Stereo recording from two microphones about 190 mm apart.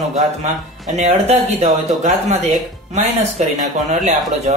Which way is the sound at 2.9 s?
35° right (ahead or behind).